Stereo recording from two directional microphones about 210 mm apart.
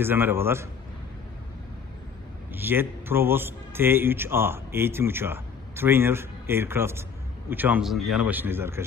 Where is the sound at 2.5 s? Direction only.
10° right (ahead or behind).